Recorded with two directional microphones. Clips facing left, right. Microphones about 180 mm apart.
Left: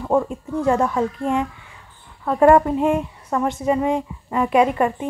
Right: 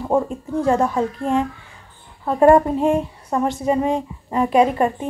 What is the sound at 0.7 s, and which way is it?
Speech, 25° right (ahead or behind).